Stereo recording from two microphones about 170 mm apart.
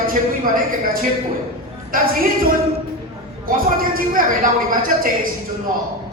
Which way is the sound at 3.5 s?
55° right (ahead or behind).